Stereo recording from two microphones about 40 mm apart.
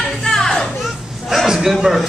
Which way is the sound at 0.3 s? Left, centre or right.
Centre.